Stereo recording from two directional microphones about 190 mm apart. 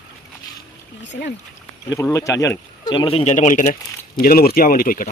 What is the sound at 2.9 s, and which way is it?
Speech, 25° left (ahead or behind).